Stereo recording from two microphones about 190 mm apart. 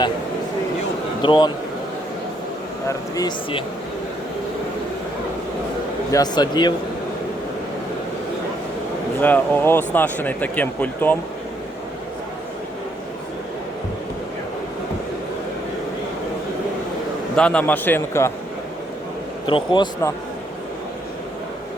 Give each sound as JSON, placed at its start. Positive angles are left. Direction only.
{"t": 1.2, "sound": "speech", "side_deg": 25}
{"t": 3.2, "sound": "speech", "side_deg": 20}
{"t": 6.1, "sound": "speech", "side_deg": 20}
{"t": 9.2, "sound": "speech", "side_deg": 10}
{"t": 17.3, "sound": "speech", "side_deg": 5}
{"t": 19.5, "sound": "speech", "side_deg": 25}